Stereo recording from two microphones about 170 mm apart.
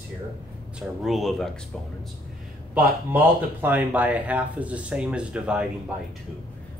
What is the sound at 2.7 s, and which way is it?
Speech, 10° right (ahead or behind).